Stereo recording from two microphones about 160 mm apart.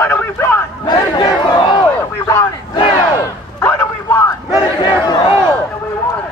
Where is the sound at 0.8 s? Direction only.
30° left (ahead or behind).